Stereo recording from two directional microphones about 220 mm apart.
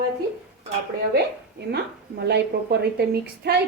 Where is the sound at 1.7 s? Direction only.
50° right (ahead or behind).